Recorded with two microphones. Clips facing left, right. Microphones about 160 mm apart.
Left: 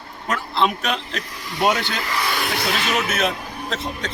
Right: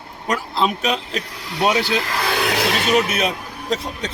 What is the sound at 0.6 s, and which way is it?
A man's voice, 5° right (ahead or behind).